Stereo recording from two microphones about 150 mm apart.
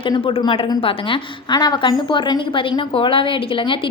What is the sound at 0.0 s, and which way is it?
A woman's voice, 35° left (ahead or behind).